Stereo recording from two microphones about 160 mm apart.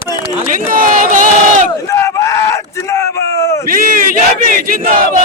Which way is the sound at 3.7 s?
60° right (ahead or behind).